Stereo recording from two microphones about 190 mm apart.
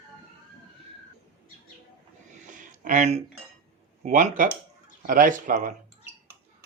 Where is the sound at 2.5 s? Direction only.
45° right (ahead or behind).